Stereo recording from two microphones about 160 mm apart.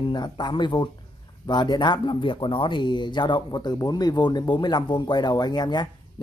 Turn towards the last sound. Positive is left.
turn(degrees=25)  # may be behind; listen again after turning